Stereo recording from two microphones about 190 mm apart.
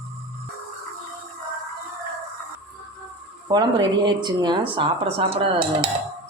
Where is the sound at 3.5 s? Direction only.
25° right (ahead or behind).